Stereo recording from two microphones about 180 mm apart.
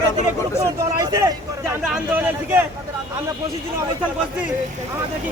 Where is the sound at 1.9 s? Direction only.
10° right (ahead or behind).